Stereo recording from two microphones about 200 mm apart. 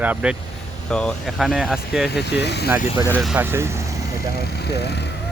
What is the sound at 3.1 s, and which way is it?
Speech, 10° right (ahead or behind).